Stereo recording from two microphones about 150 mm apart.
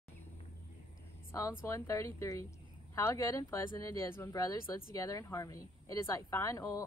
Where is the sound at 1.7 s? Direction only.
20° left (ahead or behind).